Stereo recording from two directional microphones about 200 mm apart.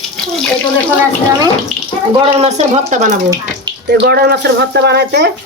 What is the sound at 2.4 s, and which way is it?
Speech, 35° right (ahead or behind).